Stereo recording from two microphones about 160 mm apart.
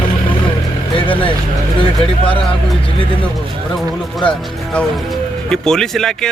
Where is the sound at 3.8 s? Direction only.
5° left (ahead or behind).